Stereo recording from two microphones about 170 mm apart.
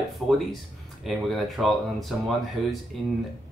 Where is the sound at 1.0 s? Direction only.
Centre (ahead or behind).